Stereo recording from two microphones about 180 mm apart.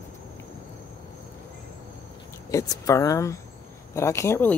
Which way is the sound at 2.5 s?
20° left (ahead or behind).